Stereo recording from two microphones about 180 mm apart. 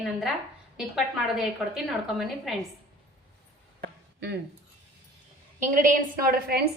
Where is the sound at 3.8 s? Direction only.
65° right (ahead or behind).